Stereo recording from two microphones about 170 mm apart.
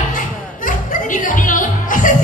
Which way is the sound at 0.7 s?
50° left (ahead or behind).